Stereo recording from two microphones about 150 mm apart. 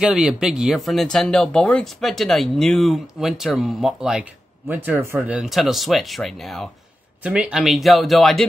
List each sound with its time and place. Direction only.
0.0 s speech: 5° right (ahead or behind)